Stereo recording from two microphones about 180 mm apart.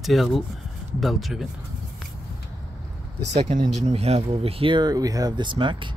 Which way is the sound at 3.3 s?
40° right (ahead or behind).